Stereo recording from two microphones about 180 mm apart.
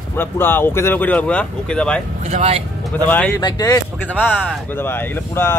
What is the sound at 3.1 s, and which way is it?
Speech, 10° left (ahead or behind).